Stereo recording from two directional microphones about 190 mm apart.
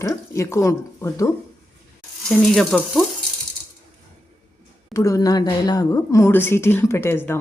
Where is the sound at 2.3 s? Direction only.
Centre (ahead or behind).